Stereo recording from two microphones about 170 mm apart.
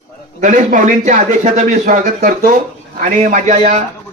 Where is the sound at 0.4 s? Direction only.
50° right (ahead or behind).